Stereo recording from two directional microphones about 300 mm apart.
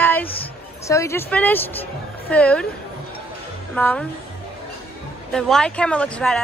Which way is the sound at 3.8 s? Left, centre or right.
Centre.